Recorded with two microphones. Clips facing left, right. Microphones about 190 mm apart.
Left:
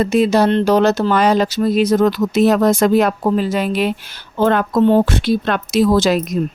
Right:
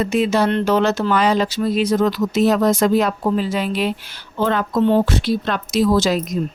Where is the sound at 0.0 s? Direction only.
35° left (ahead or behind); by 6.4 s 65° left (ahead or behind).